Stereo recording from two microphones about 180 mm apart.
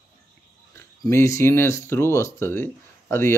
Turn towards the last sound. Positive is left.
turn(degrees=15)  # may be behind; listen again after turning